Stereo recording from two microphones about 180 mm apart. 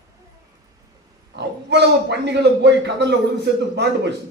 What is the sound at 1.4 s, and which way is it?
A man's voice, 70° right (ahead or behind).